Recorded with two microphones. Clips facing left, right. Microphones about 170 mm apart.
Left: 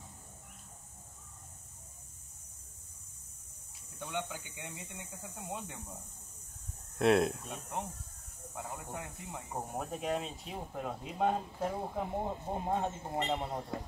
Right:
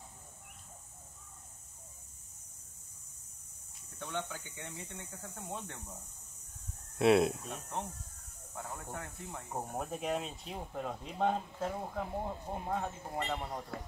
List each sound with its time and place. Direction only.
4.1 s speech: 15° left (ahead or behind)
7.0 s speech: centre (ahead or behind)
8.5 s speech: 15° left (ahead or behind)
9.5 s speech: centre (ahead or behind)
11.9 s speech: 20° left (ahead or behind)